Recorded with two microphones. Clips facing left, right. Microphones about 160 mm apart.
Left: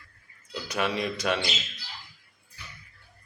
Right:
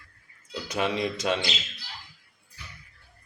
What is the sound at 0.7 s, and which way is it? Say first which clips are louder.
Speech: right 1 dB; 20° right (ahead or behind).